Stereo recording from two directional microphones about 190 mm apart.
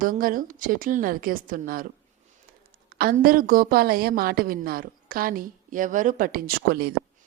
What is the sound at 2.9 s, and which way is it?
A woman's voice, 50° right (ahead or behind).